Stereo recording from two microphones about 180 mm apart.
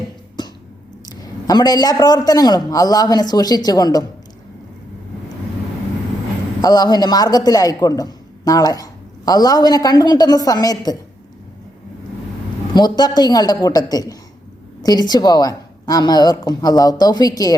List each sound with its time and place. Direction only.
1.1 s a man's voice: 20° left (ahead or behind)
6.6 s a man's voice: 20° left (ahead or behind)
12.7 s a man's voice: 25° left (ahead or behind)